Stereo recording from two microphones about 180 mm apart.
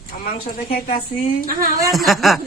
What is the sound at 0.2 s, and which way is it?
Speech, 50° left (ahead or behind).